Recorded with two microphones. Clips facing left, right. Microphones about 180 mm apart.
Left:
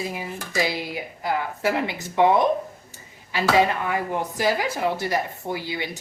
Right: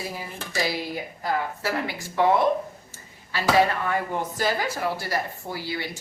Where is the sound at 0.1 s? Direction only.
20° left (ahead or behind).